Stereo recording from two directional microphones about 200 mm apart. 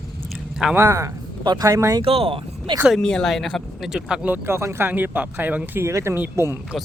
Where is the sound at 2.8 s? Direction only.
Centre (ahead or behind).